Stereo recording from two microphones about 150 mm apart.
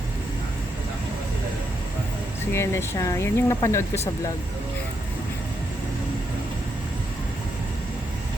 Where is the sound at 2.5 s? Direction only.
15° left (ahead or behind).